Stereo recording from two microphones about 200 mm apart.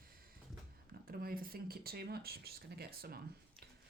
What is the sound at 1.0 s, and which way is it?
Speech, 45° right (ahead or behind).